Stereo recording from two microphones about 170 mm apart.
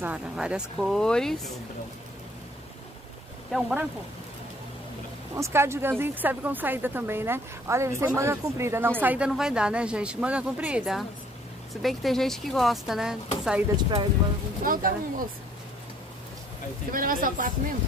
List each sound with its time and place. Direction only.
0.0 s speech: 5° right (ahead or behind)
3.5 s speech: centre (ahead or behind)
5.3 s speech: 15° right (ahead or behind)
13.7 s speech: 25° right (ahead or behind)
14.6 s speech: 55° right (ahead or behind)
16.9 s speech: 55° right (ahead or behind)